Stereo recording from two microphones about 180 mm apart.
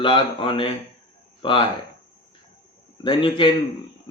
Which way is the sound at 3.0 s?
25° left (ahead or behind).